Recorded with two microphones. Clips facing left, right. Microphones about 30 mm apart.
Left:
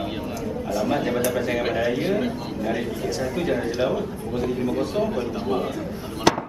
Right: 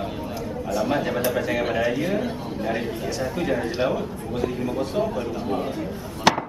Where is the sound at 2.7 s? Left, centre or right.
Right.